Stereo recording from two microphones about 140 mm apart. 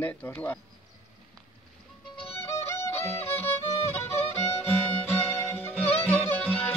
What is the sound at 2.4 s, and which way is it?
Music, 15° left (ahead or behind).